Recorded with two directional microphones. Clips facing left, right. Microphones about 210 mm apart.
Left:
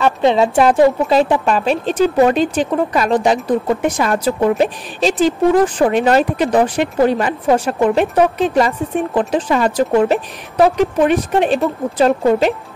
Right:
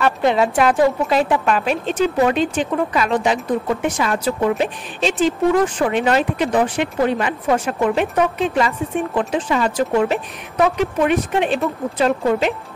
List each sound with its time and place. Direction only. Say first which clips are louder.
0.2 s a woman's voice: left 4 dB; 25° left (ahead or behind)